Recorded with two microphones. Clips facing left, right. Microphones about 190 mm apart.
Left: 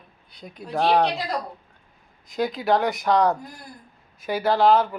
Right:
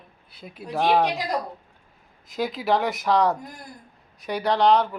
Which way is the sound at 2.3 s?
Centre (ahead or behind).